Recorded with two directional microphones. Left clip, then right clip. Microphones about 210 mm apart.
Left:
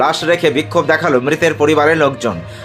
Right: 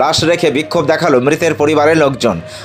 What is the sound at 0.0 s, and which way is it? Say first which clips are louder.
A man's voice: right 1 dB; 30° right (ahead or behind).